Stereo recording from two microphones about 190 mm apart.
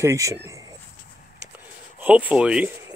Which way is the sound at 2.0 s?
10° right (ahead or behind).